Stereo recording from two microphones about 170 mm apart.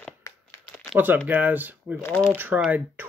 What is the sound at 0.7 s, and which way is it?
Crumpling, 5° left (ahead or behind).